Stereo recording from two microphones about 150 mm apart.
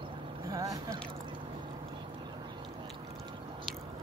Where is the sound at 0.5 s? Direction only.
25° right (ahead or behind).